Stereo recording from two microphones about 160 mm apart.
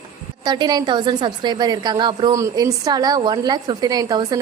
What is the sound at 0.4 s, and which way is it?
A woman's voice, 25° right (ahead or behind).